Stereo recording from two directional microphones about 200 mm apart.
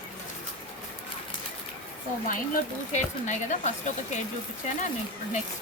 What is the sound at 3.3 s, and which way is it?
Speech, 35° left (ahead or behind).